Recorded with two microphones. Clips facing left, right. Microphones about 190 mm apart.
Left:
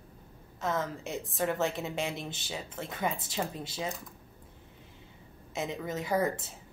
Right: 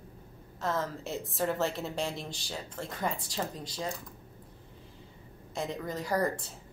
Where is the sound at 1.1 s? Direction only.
Centre (ahead or behind).